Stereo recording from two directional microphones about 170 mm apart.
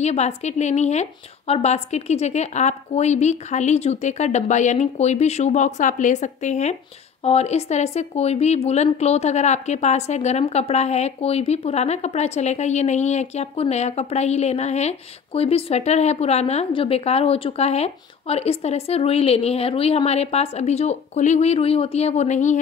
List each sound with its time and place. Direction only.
0.0 s speech: 40° left (ahead or behind)